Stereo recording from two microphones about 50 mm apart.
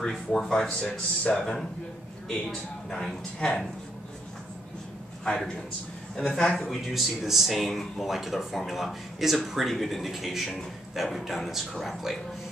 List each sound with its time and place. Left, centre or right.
0.0 s a man's voice: centre
0.7 s speech: left
0.9 s a man's voice: centre
5.2 s a man's voice: centre
6.4 s a man's voice: centre
7.2 s speech: centre